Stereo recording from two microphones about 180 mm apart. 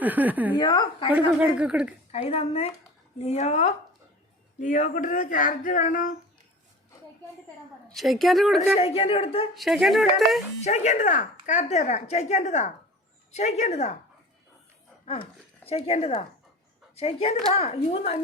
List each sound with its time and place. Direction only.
0.0 s a woman's voice: 10° right (ahead or behind)
0.5 s a woman's voice: 25° left (ahead or behind)
1.3 s speech: 5° right (ahead or behind)
2.1 s speech: 35° left (ahead or behind)
4.6 s female singing: 45° left (ahead or behind)
7.9 s speech: centre (ahead or behind)
8.7 s speech: 30° left (ahead or behind)
9.6 s speech: centre (ahead or behind)
10.6 s speech: 40° left (ahead or behind)
15.0 s speech: 35° left (ahead or behind)